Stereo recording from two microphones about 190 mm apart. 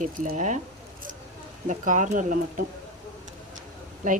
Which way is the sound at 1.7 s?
40° right (ahead or behind).